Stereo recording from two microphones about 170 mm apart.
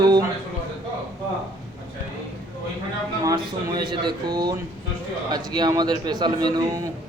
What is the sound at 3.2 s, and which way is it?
A man's voice, 25° right (ahead or behind).